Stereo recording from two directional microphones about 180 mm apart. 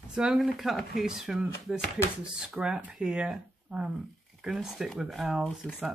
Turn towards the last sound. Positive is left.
turn(degrees=0)  # may be behind; listen again after turning